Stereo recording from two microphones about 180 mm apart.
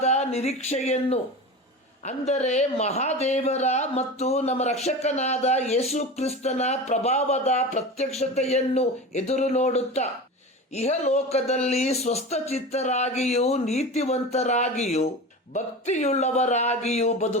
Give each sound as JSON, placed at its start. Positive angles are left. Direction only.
{"t": 0.0, "sound": "speech", "side_deg": 35}